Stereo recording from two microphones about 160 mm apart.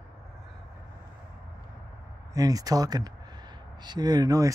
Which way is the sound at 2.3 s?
20° right (ahead or behind).